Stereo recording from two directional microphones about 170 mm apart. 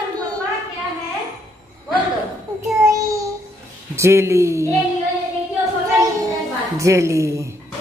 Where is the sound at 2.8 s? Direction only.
20° right (ahead or behind).